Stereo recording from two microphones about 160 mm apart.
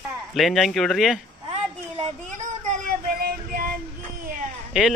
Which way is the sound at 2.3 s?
50° right (ahead or behind).